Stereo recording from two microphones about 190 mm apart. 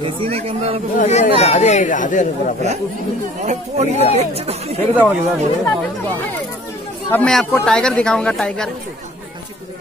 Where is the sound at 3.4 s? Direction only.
35° right (ahead or behind).